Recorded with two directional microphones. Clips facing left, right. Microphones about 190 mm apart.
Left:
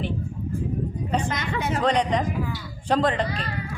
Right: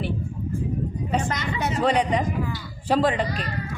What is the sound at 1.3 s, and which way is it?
Speech, 55° left (ahead or behind).